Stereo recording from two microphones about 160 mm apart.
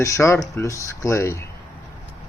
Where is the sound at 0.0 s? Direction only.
20° left (ahead or behind).